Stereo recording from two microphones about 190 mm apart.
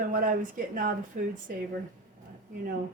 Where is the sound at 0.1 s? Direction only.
45° right (ahead or behind).